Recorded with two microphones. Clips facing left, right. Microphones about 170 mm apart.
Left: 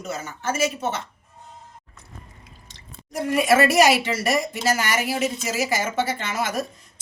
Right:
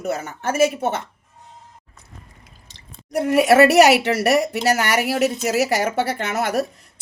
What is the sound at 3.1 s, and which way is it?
Speech, 65° right (ahead or behind).